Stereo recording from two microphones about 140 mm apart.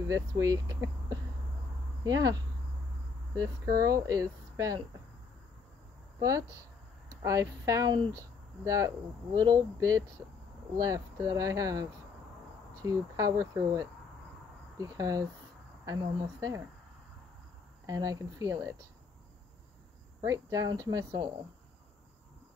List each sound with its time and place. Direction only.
0.1 s speech: 25° right (ahead or behind)
3.8 s speech: 25° right (ahead or behind)
6.1 s speech: 25° right (ahead or behind)
17.8 s speech: 25° right (ahead or behind)
20.2 s speech: 25° right (ahead or behind)